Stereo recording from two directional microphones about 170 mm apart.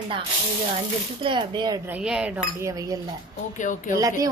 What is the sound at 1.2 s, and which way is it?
Speech, 25° right (ahead or behind).